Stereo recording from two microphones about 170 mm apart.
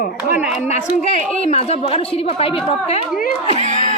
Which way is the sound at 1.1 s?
40° left (ahead or behind).